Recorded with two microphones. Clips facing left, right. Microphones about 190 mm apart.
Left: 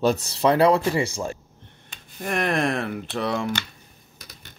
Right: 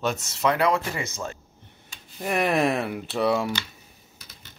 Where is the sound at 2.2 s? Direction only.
5° right (ahead or behind).